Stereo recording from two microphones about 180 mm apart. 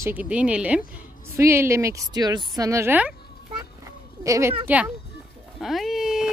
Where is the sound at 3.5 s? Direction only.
15° right (ahead or behind).